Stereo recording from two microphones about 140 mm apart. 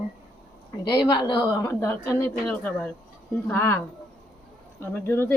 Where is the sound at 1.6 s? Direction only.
20° left (ahead or behind).